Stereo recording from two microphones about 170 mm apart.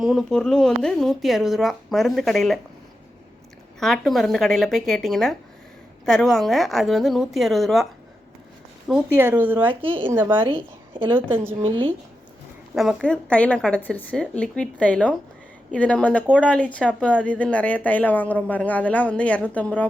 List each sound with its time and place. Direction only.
0.0 s speech: centre (ahead or behind)
3.8 s speech: centre (ahead or behind)
8.9 s speech: 10° right (ahead or behind)
10.4 s a woman's voice: 30° right (ahead or behind)
11.1 s speech: 10° right (ahead or behind)
11.6 s a woman's voice: 30° right (ahead or behind)
12.7 s a woman's voice: centre (ahead or behind)